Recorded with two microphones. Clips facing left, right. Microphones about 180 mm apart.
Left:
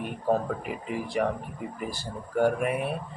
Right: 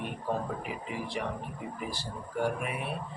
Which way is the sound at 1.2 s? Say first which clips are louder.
Left 7 dB; 55° left (ahead or behind).